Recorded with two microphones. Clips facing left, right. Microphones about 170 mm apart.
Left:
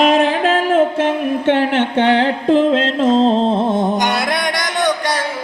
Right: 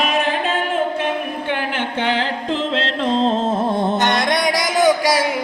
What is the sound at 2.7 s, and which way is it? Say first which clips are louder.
Music: left 6 dB; 45° left (ahead or behind).